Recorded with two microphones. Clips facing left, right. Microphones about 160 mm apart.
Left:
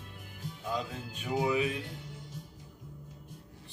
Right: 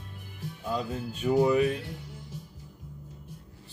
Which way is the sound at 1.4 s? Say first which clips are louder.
Right 6 dB; 50° right (ahead or behind).